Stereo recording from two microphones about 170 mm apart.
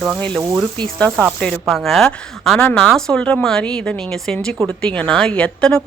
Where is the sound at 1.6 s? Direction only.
Centre (ahead or behind).